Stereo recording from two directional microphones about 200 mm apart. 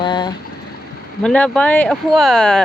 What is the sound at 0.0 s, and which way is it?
Boiling, 20° left (ahead or behind).